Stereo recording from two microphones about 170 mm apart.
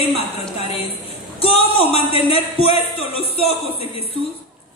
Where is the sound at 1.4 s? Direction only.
35° left (ahead or behind).